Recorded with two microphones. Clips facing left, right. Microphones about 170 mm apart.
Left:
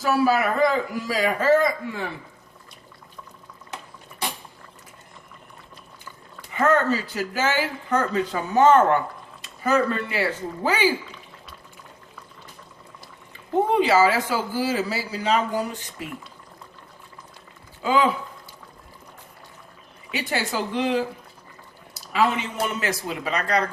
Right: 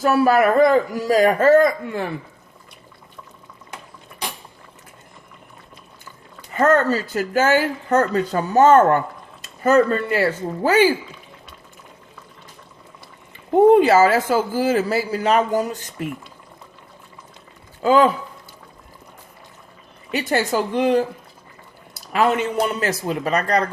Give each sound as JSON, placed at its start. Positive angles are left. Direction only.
{"t": 0.0, "sound": "speech", "side_deg": -55}
{"t": 6.5, "sound": "speech", "side_deg": -40}
{"t": 13.7, "sound": "speech", "side_deg": -50}
{"t": 17.8, "sound": "speech", "side_deg": -45}
{"t": 20.1, "sound": "speech", "side_deg": -45}
{"t": 22.1, "sound": "speech", "side_deg": -50}